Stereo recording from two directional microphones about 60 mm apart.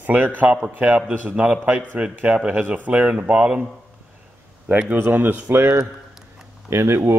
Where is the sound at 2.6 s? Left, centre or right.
Right.